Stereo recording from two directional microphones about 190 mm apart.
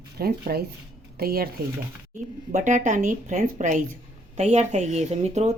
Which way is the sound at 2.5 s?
40° right (ahead or behind).